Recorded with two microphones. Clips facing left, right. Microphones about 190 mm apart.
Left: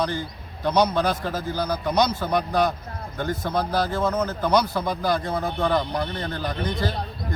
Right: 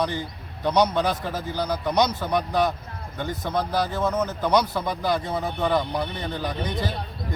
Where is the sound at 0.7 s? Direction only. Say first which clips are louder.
Even; centre (ahead or behind).